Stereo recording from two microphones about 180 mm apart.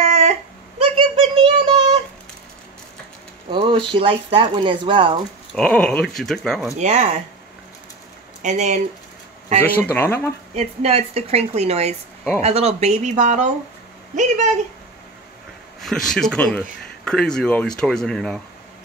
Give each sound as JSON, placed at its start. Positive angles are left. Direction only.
{"t": 0.0, "sound": "a sound", "side_deg": -40}
{"t": 3.4, "sound": "speech", "side_deg": -30}
{"t": 5.5, "sound": "speech", "side_deg": 5}
{"t": 6.8, "sound": "speech", "side_deg": -40}
{"t": 8.4, "sound": "speech", "side_deg": -40}
{"t": 9.9, "sound": "speech", "side_deg": 10}
{"t": 10.5, "sound": "speech", "side_deg": -35}
{"t": 15.8, "sound": "speech", "side_deg": 0}